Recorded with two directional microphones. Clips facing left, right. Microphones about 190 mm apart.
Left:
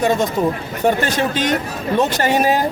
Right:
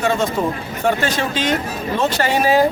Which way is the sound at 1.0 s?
45° left (ahead or behind).